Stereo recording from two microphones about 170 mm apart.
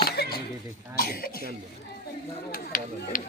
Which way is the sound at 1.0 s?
60° left (ahead or behind).